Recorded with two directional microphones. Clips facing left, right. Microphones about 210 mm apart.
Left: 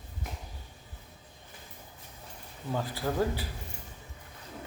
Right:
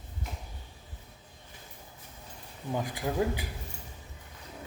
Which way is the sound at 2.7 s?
15° right (ahead or behind).